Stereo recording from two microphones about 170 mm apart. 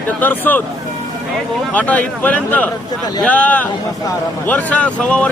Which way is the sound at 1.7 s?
10° left (ahead or behind).